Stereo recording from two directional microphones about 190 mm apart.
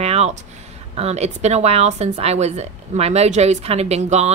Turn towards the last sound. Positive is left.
turn(degrees=-35)  # may be behind; listen again after turning